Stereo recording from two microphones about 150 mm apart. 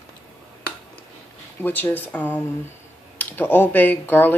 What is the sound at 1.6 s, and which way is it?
Speech, 10° left (ahead or behind).